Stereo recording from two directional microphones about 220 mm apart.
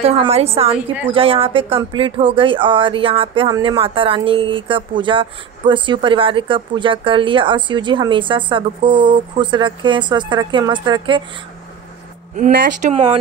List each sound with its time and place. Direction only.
0.0 s speech: 25° right (ahead or behind)
12.4 s speech: 35° right (ahead or behind)